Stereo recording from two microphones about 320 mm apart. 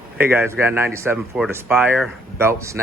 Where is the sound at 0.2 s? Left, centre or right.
Centre.